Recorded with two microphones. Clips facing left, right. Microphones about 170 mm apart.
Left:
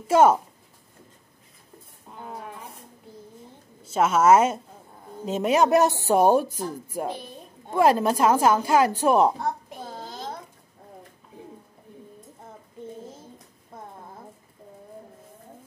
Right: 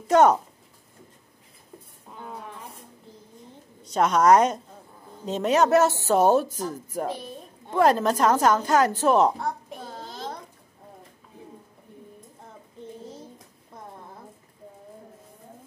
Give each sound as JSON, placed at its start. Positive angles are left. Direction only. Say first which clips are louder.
{"t": 0.1, "sound": "a woman's voice", "louder": "even", "side_deg": 5}
{"t": 2.1, "sound": "a sound", "louder": "left 1 dB", "side_deg": 10}
{"t": 3.8, "sound": "a woman's voice", "louder": "even", "side_deg": 5}